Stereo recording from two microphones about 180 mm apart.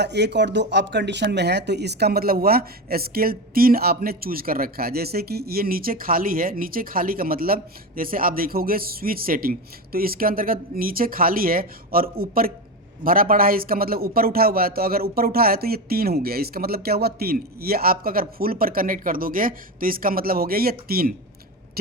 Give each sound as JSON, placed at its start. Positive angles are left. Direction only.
{"t": 0.0, "sound": "speech", "side_deg": -70}